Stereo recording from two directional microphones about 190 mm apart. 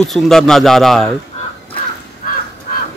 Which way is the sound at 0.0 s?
Centre (ahead or behind).